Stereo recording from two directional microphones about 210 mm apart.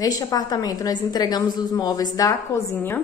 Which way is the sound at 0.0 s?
20° left (ahead or behind).